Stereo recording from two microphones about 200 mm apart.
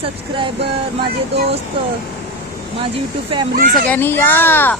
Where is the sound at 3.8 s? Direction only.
10° left (ahead or behind).